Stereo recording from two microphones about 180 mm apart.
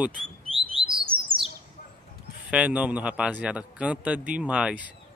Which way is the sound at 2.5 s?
5° right (ahead or behind).